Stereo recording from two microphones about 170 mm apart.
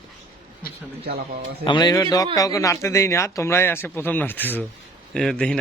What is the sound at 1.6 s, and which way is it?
A man's voice, 25° left (ahead or behind).